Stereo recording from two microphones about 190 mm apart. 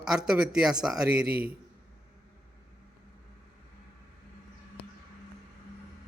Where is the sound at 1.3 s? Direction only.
50° right (ahead or behind).